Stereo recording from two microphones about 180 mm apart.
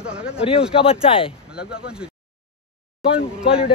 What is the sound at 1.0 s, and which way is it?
Speech, 30° left (ahead or behind).